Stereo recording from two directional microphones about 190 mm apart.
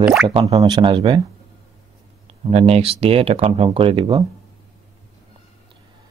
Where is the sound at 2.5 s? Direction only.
30° right (ahead or behind).